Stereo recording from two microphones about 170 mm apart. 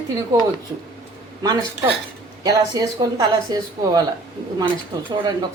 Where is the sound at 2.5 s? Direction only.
25° right (ahead or behind).